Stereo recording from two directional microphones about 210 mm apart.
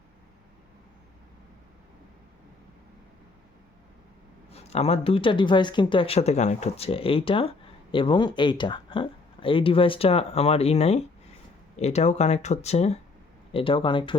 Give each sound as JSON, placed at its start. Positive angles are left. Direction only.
{"t": 4.5, "sound": "speech", "side_deg": 30}